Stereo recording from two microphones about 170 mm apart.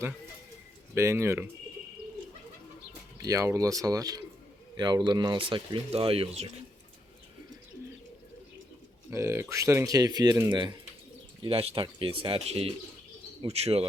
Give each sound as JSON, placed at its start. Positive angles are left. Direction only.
{"t": 0.9, "sound": "speech", "side_deg": -15}
{"t": 3.2, "sound": "speech", "side_deg": -20}
{"t": 9.0, "sound": "speech", "side_deg": -15}